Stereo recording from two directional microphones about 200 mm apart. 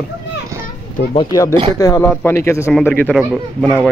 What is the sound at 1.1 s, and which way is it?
Speech, 15° left (ahead or behind).